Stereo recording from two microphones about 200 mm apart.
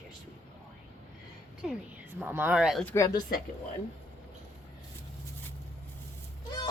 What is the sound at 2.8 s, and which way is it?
Speech, 15° left (ahead or behind).